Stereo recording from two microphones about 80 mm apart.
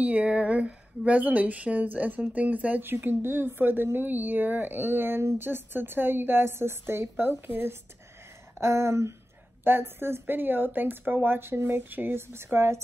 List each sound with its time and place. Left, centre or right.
0.0 s speech: centre
8.5 s a sound: right
9.7 s speech: right